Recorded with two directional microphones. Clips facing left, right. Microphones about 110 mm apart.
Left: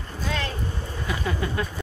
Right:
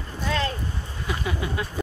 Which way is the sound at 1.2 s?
10° right (ahead or behind).